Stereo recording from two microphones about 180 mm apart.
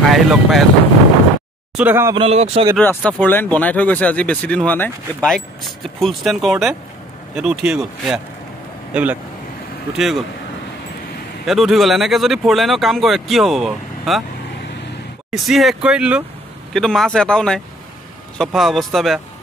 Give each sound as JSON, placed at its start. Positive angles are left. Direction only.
{"t": 0.0, "sound": "speech", "side_deg": 0}
{"t": 1.8, "sound": "speech", "side_deg": -10}
{"t": 2.1, "sound": "speech", "side_deg": -35}
{"t": 2.8, "sound": "speech", "side_deg": 10}
{"t": 11.4, "sound": "speech", "side_deg": 0}
{"t": 15.3, "sound": "speech", "side_deg": 0}